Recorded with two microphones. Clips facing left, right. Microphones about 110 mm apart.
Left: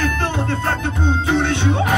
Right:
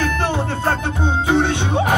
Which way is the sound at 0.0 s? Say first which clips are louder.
Right 1 dB; 15° right (ahead or behind).